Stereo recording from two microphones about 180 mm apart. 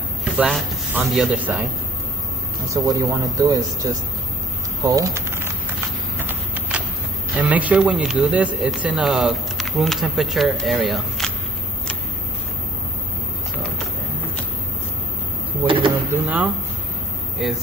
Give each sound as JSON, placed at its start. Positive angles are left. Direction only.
{"t": 0.2, "sound": "a man's voice", "side_deg": -5}
{"t": 2.9, "sound": "speech", "side_deg": -20}
{"t": 6.1, "sound": "a sound", "side_deg": -10}
{"t": 7.3, "sound": "speech", "side_deg": -10}
{"t": 15.6, "sound": "drawer open or close", "side_deg": -30}
{"t": 16.1, "sound": "speech", "side_deg": -10}